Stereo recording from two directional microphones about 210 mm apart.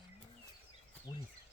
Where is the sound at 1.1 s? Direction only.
25° left (ahead or behind).